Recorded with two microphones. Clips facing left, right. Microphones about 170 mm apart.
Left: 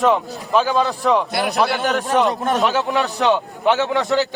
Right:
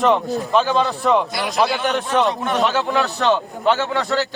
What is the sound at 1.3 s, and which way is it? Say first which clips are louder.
Speech: left 3 dB; 60° left (ahead or behind).